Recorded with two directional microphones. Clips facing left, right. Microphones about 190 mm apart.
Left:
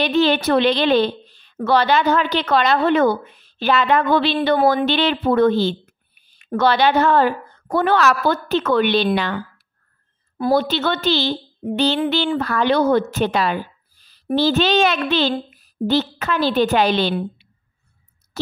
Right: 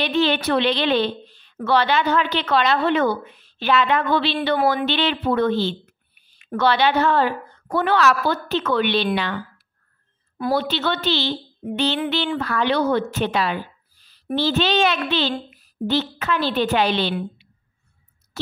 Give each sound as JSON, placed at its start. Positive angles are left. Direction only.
{"t": 0.0, "sound": "a woman's voice", "side_deg": 40}
{"t": 10.5, "sound": "a woman's voice", "side_deg": 45}